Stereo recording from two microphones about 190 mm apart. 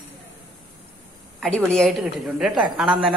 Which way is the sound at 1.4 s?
5° left (ahead or behind).